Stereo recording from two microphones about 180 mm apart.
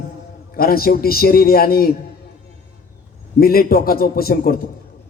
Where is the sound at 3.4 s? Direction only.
55° left (ahead or behind).